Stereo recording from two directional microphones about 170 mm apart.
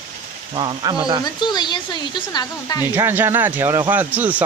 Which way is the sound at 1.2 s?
25° left (ahead or behind).